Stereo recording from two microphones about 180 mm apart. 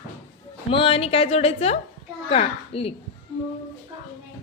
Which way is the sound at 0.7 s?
30° left (ahead or behind).